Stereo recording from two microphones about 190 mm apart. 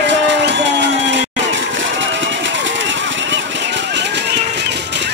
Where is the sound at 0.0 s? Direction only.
70° right (ahead or behind).